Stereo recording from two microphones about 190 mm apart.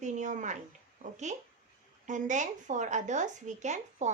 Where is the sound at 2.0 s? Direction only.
40° right (ahead or behind).